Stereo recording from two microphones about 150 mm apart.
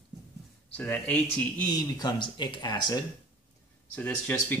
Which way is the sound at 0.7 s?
10° left (ahead or behind).